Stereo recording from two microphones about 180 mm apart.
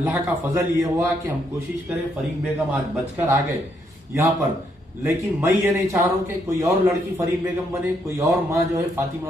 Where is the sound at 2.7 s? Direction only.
15° right (ahead or behind).